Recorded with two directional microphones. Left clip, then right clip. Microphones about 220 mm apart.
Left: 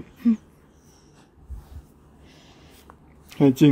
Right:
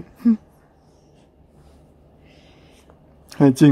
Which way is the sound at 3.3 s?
20° right (ahead or behind).